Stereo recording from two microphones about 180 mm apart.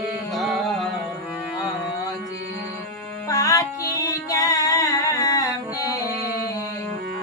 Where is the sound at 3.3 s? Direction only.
20° left (ahead or behind).